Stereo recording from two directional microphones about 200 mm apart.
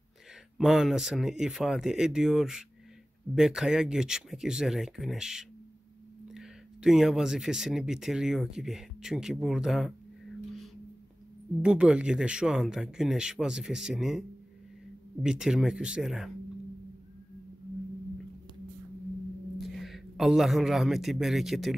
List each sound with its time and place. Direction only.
0.6 s speech: centre (ahead or behind)
11.6 s speech: 5° right (ahead or behind)
15.2 s speech: 5° right (ahead or behind)
19.8 s speech: centre (ahead or behind)